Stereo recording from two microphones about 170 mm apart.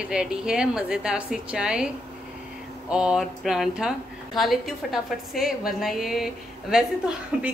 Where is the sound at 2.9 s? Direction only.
5° right (ahead or behind).